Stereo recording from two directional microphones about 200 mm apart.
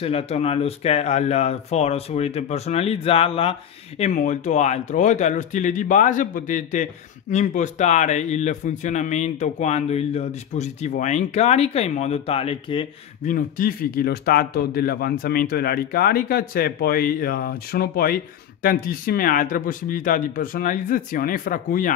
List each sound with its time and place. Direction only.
0.0 s speech: 30° left (ahead or behind)
13.3 s a man's voice: 45° left (ahead or behind)